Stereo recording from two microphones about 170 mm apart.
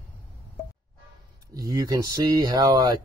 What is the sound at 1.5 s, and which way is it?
Speech, 20° right (ahead or behind).